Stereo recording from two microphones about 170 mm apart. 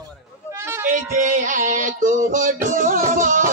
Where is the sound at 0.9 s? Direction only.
50° right (ahead or behind).